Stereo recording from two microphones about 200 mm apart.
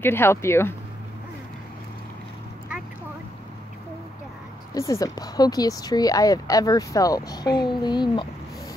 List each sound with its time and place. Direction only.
0.0 s speech: 10° left (ahead or behind)
4.7 s speech: 15° left (ahead or behind)